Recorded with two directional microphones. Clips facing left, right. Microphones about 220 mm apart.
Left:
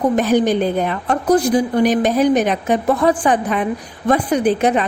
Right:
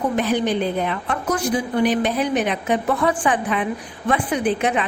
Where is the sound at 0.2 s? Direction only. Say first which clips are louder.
Left 5 dB; 45° left (ahead or behind).